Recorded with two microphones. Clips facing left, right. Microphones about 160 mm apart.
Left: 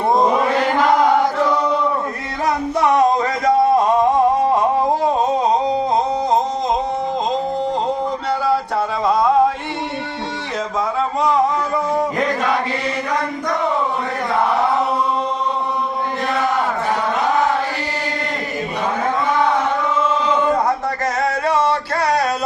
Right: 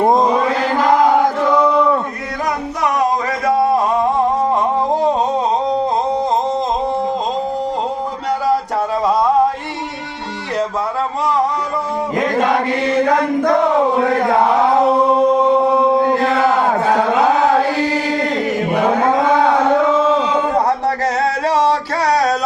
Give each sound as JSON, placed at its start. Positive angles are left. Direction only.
{"t": 13.1, "sound": "a sound", "side_deg": -55}
{"t": 14.0, "sound": "chant", "side_deg": -90}
{"t": 14.9, "sound": "singing", "side_deg": -50}
{"t": 15.7, "sound": "chant", "side_deg": -90}
{"t": 16.9, "sound": "a sound", "side_deg": -90}
{"t": 18.9, "sound": "music", "side_deg": -90}
{"t": 21.4, "sound": "music", "side_deg": -35}